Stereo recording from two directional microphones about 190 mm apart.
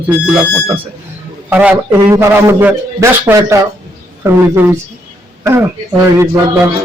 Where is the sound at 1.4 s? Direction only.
10° right (ahead or behind).